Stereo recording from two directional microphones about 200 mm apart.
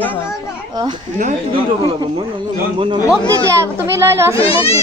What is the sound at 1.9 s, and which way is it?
Speech, 30° right (ahead or behind).